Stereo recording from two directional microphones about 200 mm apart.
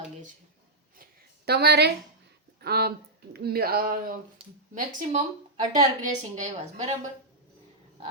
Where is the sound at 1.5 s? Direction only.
55° right (ahead or behind); by 6.9 s 35° right (ahead or behind).